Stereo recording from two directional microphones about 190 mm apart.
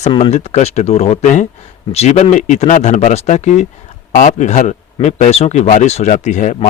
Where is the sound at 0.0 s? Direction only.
35° left (ahead or behind).